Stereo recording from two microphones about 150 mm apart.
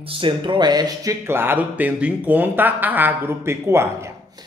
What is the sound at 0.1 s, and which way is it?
A man's voice, 35° right (ahead or behind).